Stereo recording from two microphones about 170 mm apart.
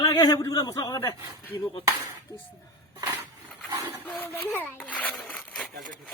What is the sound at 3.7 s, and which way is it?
Speech, 20° right (ahead or behind).